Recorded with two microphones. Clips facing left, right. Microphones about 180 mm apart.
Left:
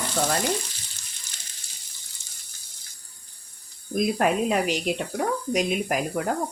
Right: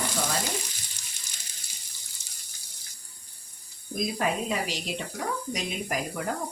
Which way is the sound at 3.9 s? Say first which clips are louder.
Left 6 dB; 60° left (ahead or behind).